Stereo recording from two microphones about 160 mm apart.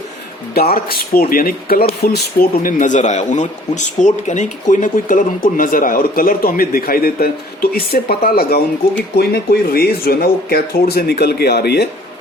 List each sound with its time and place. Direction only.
0.5 s a man's voice: 75° left (ahead or behind)